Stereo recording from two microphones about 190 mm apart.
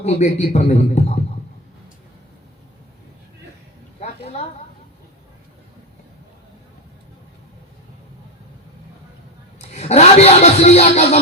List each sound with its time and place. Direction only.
0.0 s a man's voice: 35° left (ahead or behind)
4.2 s a sound: 35° left (ahead or behind)
9.6 s speech: 35° left (ahead or behind)